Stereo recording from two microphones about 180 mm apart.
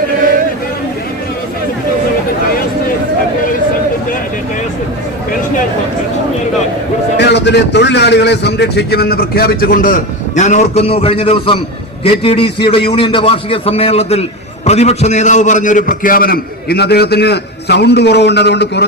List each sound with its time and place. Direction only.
7.3 s a man's voice: 70° left (ahead or behind)